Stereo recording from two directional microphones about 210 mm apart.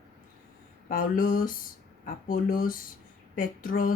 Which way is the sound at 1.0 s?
40° left (ahead or behind).